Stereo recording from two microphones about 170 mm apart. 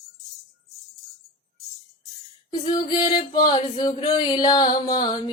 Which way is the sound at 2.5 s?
25° left (ahead or behind).